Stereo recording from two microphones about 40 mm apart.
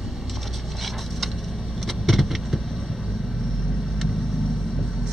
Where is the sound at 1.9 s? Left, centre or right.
Centre.